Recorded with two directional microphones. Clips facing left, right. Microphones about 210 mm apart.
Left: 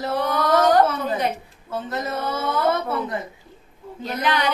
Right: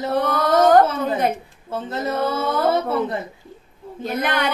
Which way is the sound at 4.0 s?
50° right (ahead or behind).